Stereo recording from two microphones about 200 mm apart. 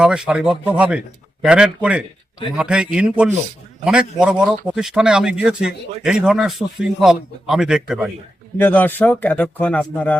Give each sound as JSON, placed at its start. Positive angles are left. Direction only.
{"t": 0.0, "sound": "a man's voice", "side_deg": -5}
{"t": 8.5, "sound": "speech", "side_deg": 10}